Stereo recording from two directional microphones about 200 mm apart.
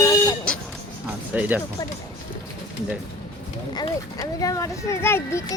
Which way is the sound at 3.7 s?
20° left (ahead or behind).